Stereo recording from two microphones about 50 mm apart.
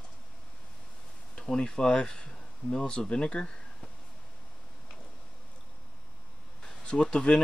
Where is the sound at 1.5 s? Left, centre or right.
Centre.